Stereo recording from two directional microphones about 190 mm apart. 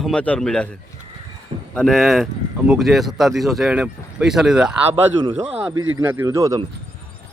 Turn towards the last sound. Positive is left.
turn(degrees=-20)  # may be behind; listen again after turning